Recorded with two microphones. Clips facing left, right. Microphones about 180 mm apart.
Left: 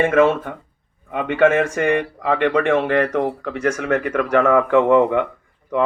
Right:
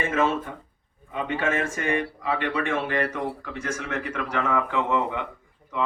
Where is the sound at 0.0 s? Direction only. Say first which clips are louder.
Left 9 dB; 60° left (ahead or behind).